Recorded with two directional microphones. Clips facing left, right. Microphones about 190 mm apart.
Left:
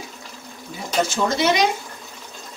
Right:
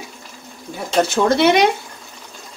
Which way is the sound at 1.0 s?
60° right (ahead or behind).